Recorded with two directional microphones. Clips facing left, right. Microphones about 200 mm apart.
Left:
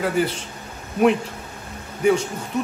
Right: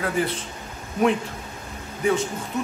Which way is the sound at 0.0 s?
Centre (ahead or behind).